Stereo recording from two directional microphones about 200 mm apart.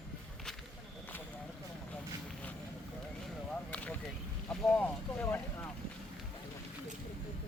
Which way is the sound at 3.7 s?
5° left (ahead or behind).